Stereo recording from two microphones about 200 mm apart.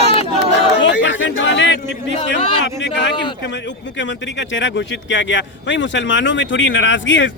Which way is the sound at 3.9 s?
65° left (ahead or behind).